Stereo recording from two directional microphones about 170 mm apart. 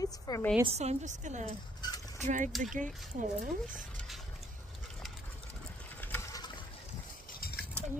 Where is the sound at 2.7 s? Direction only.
50° right (ahead or behind).